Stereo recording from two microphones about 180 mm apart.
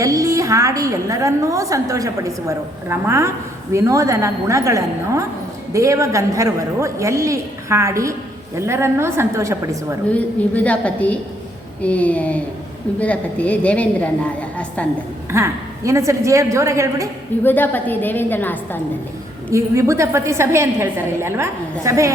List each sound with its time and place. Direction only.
0.0 s a woman's voice: 20° right (ahead or behind)
10.1 s a woman's voice: 10° left (ahead or behind)
15.3 s a woman's voice: 15° right (ahead or behind)
17.4 s a woman's voice: 10° left (ahead or behind)
19.5 s a woman's voice: 15° right (ahead or behind)